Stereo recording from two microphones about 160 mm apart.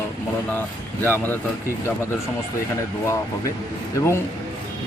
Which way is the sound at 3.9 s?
15° left (ahead or behind).